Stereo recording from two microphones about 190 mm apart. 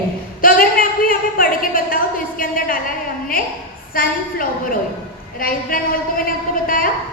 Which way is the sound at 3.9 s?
50° left (ahead or behind).